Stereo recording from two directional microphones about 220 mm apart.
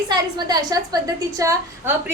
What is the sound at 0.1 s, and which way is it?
A woman's voice, 20° right (ahead or behind).